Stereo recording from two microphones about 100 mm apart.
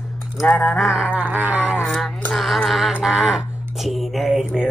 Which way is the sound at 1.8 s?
5° left (ahead or behind).